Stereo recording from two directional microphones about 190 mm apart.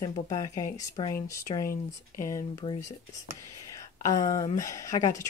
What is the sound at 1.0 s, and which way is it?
Speech, 30° left (ahead or behind).